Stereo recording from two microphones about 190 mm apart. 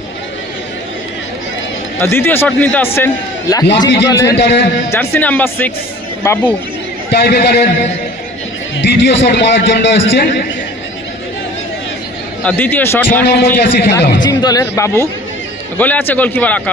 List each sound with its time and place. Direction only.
2.0 s a man's voice: 10° left (ahead or behind)
4.4 s a man's voice: 65° left (ahead or behind)
4.9 s a man's voice: 10° left (ahead or behind)
7.1 s a man's voice: 60° left (ahead or behind)
8.8 s a man's voice: 65° left (ahead or behind)
12.4 s a man's voice: 10° left (ahead or behind)
13.2 s a man's voice: 60° left (ahead or behind)
14.1 s a man's voice: 20° left (ahead or behind)